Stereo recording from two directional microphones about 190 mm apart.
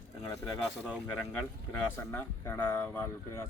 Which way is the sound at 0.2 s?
15° left (ahead or behind).